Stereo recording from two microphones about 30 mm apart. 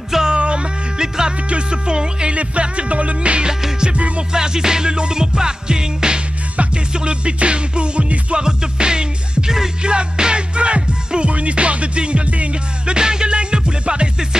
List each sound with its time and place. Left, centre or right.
0.3 s music: right
2.3 s music: right
4.3 s music: right
6.7 s music: right
12.8 s music: right